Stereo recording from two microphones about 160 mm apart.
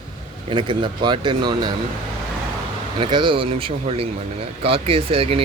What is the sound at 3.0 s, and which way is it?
Speech, 30° right (ahead or behind).